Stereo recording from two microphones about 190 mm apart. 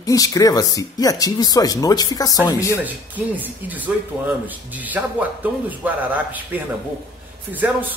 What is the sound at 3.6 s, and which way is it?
Speech, 10° right (ahead or behind).